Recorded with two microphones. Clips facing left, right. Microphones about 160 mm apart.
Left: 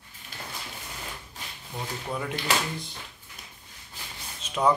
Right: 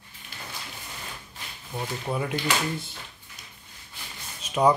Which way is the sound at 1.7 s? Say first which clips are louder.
Right 3 dB; 10° right (ahead or behind).